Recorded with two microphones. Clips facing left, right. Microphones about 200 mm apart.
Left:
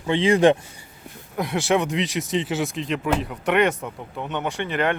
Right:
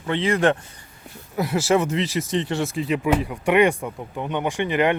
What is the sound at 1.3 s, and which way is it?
Speech, 5° right (ahead or behind).